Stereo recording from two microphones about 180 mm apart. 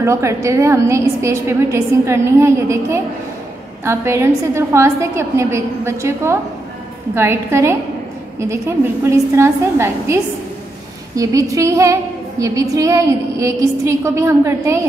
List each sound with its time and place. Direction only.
0.0 s a woman's voice: 15° right (ahead or behind)
11.1 s a woman's voice: 20° right (ahead or behind)